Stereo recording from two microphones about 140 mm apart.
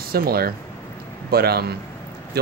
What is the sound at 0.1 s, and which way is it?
Speech, 90° right.